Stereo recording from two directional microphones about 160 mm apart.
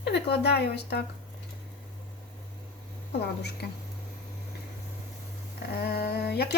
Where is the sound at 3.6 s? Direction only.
80° left.